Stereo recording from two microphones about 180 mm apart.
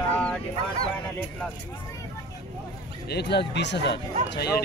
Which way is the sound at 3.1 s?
65° left (ahead or behind).